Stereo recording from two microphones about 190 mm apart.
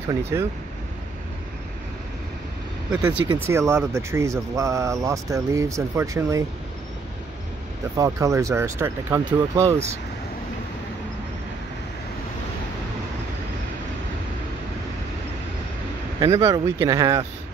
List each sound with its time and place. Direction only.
0.1 s speech: 15° right (ahead or behind)
3.4 s speech: 15° right (ahead or behind)
8.0 s speech: 15° right (ahead or behind)
16.2 s speech: 20° right (ahead or behind)